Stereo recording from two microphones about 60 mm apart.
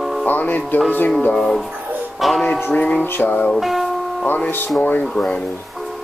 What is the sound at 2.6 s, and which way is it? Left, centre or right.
Speech, left.